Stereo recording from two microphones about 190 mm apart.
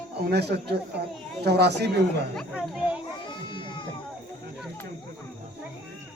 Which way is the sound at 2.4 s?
Centre (ahead or behind).